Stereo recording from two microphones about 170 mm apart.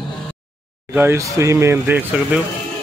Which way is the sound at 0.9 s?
15° right (ahead or behind).